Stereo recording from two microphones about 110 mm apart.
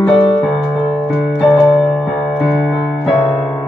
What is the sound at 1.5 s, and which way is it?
Electric piano, 5° left (ahead or behind).